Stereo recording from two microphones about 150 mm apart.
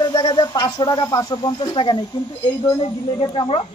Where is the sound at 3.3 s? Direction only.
35° left (ahead or behind).